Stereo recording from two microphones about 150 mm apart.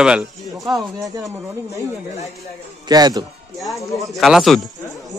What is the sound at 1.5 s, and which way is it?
Speech, 20° right (ahead or behind).